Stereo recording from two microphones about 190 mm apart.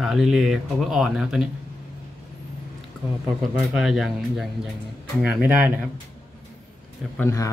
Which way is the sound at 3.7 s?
Centre (ahead or behind).